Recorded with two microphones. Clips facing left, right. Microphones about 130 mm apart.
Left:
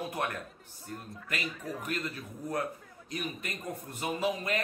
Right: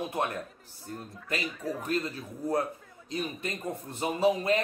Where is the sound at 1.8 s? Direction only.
30° right (ahead or behind).